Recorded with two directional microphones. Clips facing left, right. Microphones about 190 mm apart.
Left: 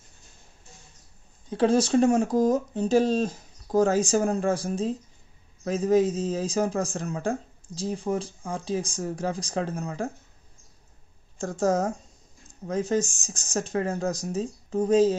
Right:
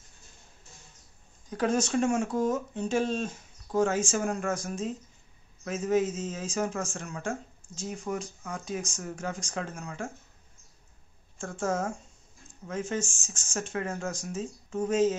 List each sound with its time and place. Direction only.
1.5 s speech: 30° left (ahead or behind)
11.3 s speech: 35° left (ahead or behind)